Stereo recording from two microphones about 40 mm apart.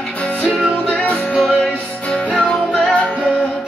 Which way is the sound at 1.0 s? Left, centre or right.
Left.